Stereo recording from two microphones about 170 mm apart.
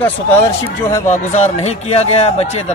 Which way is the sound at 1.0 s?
45° left (ahead or behind).